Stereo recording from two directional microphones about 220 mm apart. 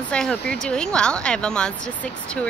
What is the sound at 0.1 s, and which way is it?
Speech, 5° left (ahead or behind).